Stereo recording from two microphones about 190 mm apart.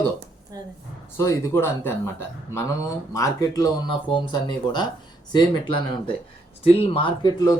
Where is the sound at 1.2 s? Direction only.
15° left (ahead or behind).